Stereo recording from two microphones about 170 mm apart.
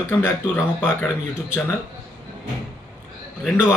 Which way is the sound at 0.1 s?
10° left (ahead or behind).